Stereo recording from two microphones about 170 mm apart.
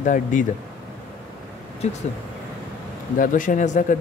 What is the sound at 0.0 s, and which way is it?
Speech, 50° left (ahead or behind).